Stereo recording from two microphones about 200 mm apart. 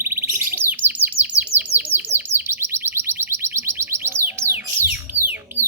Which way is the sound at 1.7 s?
10° right (ahead or behind).